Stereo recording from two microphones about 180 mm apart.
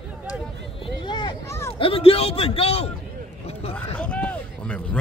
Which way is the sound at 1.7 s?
30° left (ahead or behind).